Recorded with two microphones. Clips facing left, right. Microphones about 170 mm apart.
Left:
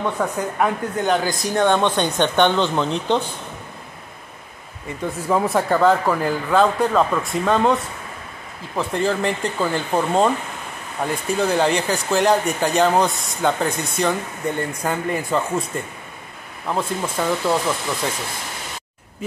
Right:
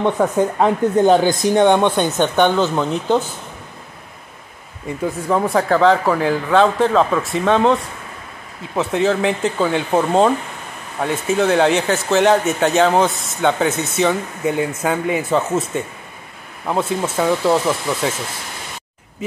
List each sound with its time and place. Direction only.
0.0 s speech: 25° right (ahead or behind)
1.2 s speech: centre (ahead or behind)
1.5 s speech: 15° right (ahead or behind)
5.0 s speech: centre (ahead or behind)